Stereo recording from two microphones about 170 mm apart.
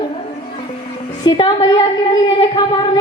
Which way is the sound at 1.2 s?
25° left (ahead or behind).